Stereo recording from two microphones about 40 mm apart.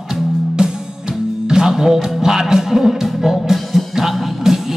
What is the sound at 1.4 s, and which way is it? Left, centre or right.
Music, centre.